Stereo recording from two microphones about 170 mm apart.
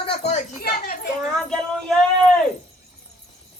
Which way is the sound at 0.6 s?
65° left (ahead or behind).